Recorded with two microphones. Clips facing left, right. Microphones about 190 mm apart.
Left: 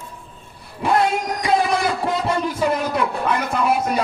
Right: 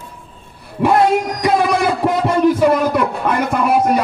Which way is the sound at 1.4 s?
55° right (ahead or behind).